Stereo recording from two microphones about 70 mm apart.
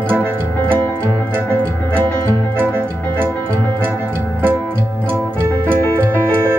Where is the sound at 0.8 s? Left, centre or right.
Left.